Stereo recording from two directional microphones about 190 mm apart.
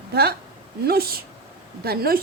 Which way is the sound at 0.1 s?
55° right (ahead or behind).